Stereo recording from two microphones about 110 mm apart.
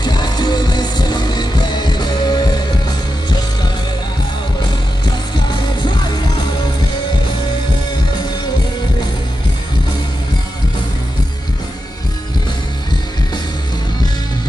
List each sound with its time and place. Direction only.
0.0 s music: 40° left (ahead or behind)
5.0 s music: 40° left (ahead or behind)